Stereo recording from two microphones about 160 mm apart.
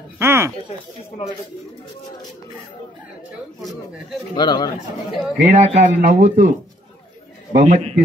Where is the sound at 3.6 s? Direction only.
Centre (ahead or behind).